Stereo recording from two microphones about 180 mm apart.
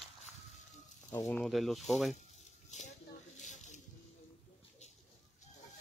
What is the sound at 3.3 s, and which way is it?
Snake, 40° left (ahead or behind).